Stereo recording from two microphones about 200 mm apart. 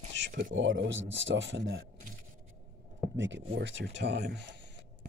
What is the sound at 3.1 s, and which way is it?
Speech, 65° right (ahead or behind).